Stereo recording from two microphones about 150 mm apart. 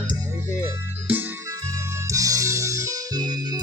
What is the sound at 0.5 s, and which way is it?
Music, 10° right (ahead or behind).